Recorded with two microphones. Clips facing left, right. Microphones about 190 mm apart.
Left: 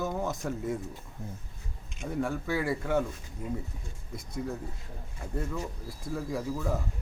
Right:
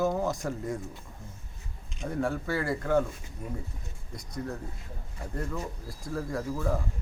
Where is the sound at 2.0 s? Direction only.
Centre (ahead or behind).